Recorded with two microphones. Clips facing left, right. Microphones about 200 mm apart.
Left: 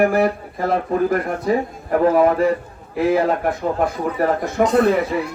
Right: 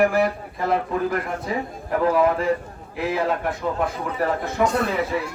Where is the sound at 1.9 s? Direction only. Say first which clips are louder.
Left 4 dB; 45° left (ahead or behind).